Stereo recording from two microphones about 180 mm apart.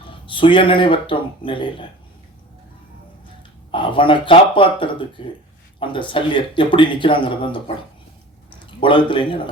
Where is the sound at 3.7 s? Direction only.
25° left (ahead or behind).